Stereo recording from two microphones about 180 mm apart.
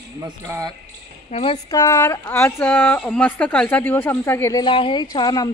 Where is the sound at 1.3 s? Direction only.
30° left (ahead or behind).